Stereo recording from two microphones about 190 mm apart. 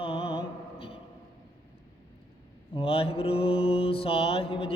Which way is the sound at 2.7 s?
30° left (ahead or behind).